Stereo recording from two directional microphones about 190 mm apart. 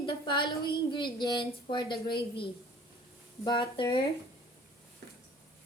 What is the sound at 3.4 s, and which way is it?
Speech, 25° left (ahead or behind).